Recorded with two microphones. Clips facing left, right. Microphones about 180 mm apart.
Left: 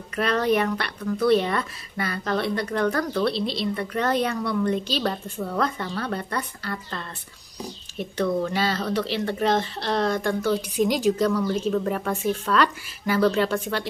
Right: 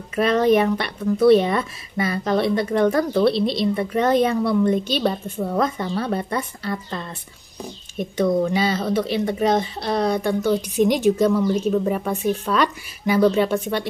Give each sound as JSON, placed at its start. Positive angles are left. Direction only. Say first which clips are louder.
{"t": 0.1, "sound": "speech", "louder": "right 5 dB", "side_deg": -20}
{"t": 3.3, "sound": "a woman's voice", "louder": "right 6 dB", "side_deg": -60}
{"t": 3.7, "sound": "speech", "louder": "right 5 dB", "side_deg": -20}